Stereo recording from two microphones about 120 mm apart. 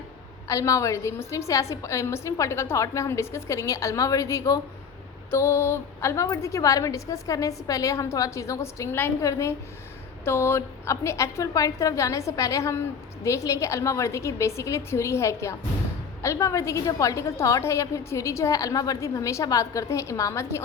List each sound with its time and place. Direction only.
0.4 s a woman's voice: 25° left (ahead or behind)